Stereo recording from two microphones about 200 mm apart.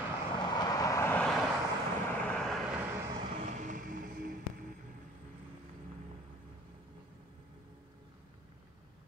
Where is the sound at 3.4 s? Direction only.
40° right (ahead or behind).